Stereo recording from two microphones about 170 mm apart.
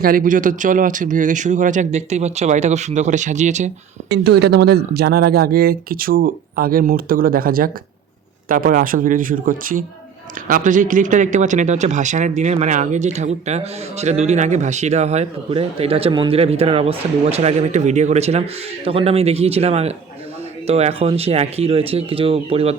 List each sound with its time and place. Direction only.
0.0 s speech: 55° right (ahead or behind)
4.1 s speech: 75° right (ahead or behind); by 22.8 s 35° right (ahead or behind)